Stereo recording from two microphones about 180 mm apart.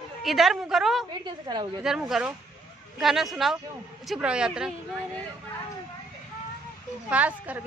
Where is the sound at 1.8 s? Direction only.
5° right (ahead or behind).